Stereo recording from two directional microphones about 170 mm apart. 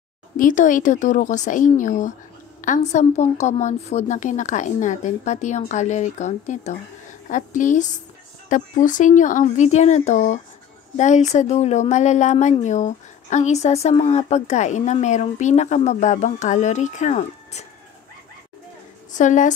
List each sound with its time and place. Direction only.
0.4 s speech: 50° left (ahead or behind)
19.1 s speech: 50° left (ahead or behind)